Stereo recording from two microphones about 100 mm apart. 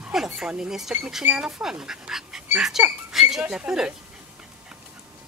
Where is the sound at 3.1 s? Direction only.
5° right (ahead or behind).